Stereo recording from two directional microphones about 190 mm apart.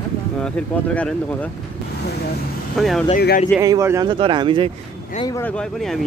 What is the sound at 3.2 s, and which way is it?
Speech, 55° left (ahead or behind).